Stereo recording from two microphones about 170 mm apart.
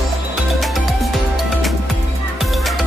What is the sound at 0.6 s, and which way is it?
Music, centre (ahead or behind).